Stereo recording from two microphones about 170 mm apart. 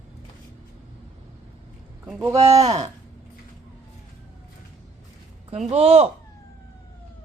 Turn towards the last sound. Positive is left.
turn(degrees=-40)  # may be behind; listen again after turning